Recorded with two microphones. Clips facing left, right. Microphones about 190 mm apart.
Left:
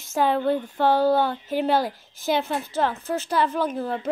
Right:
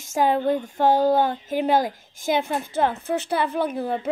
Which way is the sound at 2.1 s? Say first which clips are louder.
Right 1 dB; 50° right (ahead or behind).